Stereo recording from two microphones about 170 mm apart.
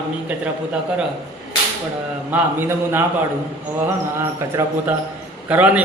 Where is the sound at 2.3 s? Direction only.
10° right (ahead or behind).